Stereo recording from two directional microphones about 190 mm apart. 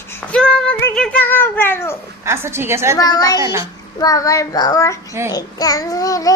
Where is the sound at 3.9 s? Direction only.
20° left (ahead or behind).